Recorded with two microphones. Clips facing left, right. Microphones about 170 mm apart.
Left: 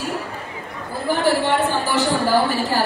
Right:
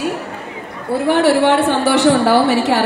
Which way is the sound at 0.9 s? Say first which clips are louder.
Right 6 dB; 75° right (ahead or behind).